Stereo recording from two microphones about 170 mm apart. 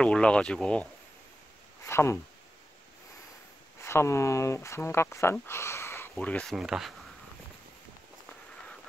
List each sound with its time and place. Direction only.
0.0 s speech: 5° left (ahead or behind)
1.9 s speech: 15° left (ahead or behind)
3.8 s speech: 15° left (ahead or behind); by 6.9 s 5° right (ahead or behind)